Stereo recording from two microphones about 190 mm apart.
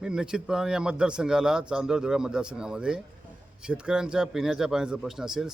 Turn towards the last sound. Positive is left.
turn(degrees=-5)  # may be behind; listen again after turning